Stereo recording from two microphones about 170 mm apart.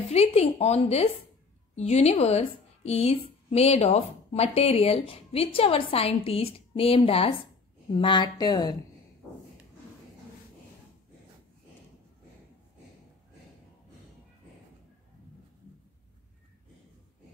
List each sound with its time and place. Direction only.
0.1 s a woman's voice: 40° left (ahead or behind)